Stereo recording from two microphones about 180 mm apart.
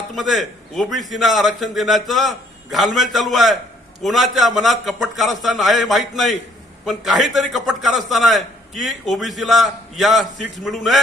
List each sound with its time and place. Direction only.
0.1 s a man's voice: centre (ahead or behind)